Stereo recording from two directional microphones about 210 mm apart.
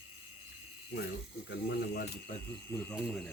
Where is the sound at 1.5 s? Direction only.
55° left (ahead or behind).